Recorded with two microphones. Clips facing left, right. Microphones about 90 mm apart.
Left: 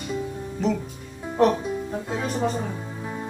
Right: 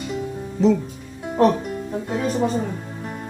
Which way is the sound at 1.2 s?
5° right (ahead or behind).